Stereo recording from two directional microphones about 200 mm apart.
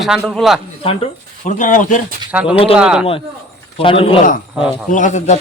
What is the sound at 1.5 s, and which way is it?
Speech, 40° left (ahead or behind).